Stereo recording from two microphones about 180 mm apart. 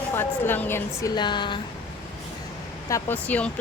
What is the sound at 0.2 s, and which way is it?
Speech, 10° left (ahead or behind).